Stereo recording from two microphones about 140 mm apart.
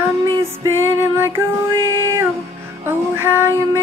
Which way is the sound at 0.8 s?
15° right (ahead or behind).